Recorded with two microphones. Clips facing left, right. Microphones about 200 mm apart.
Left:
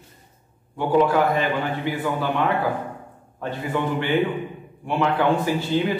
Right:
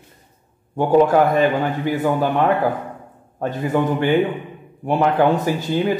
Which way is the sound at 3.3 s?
45° right (ahead or behind).